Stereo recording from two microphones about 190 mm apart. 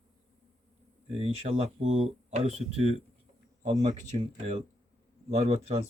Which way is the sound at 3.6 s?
35° right (ahead or behind).